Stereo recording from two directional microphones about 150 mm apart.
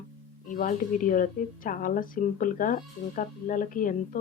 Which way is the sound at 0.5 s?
65° left (ahead or behind).